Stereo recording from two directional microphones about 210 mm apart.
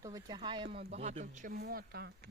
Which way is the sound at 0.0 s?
15° right (ahead or behind).